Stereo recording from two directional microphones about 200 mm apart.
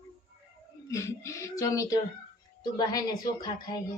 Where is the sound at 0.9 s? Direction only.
15° left (ahead or behind).